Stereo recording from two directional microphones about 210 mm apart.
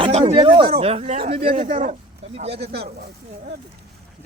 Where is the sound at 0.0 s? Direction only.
30° right (ahead or behind).